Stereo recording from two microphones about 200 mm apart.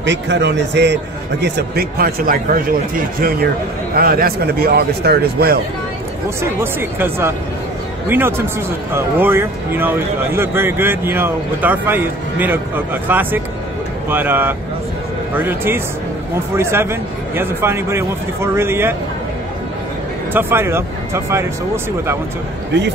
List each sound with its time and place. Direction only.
0.0 s a man's voice: 60° right (ahead or behind)
6.6 s speech: 10° right (ahead or behind)
20.3 s speech: 10° right (ahead or behind)